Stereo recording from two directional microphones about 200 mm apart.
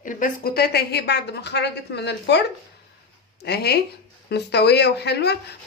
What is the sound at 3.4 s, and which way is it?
A woman's voice, 55° left (ahead or behind).